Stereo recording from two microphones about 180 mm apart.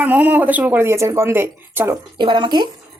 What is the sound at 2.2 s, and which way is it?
Speech, 25° right (ahead or behind).